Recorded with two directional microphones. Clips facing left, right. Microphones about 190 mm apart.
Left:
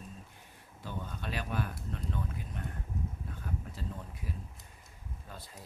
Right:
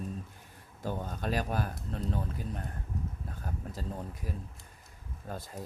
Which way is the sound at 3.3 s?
40° right (ahead or behind).